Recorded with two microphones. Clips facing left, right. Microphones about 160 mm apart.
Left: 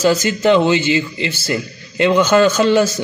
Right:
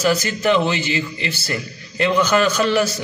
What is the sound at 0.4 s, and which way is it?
A man's voice, 25° left (ahead or behind).